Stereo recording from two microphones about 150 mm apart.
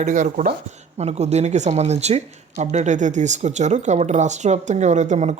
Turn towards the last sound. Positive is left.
turn(degrees=-50)  # may be behind; listen again after turning